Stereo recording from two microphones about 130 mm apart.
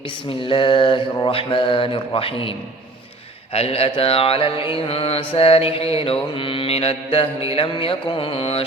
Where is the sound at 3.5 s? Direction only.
50° left (ahead or behind).